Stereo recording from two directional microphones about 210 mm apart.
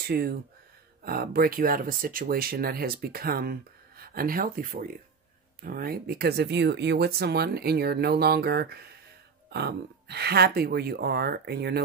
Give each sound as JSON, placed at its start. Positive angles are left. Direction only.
{"t": 0.0, "sound": "speech", "side_deg": -45}